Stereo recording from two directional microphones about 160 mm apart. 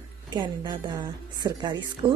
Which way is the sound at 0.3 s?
25° right (ahead or behind).